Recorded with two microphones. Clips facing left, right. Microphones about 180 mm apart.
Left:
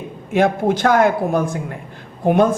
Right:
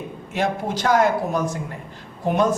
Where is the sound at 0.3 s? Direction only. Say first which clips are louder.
Left 8 dB; 55° left (ahead or behind).